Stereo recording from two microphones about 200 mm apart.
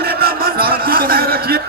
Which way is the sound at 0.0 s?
50° right (ahead or behind).